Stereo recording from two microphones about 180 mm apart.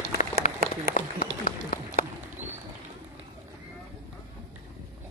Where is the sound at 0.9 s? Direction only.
50° left (ahead or behind).